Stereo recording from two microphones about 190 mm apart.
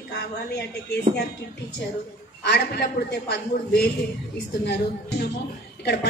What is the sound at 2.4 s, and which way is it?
A woman's voice, 60° left (ahead or behind).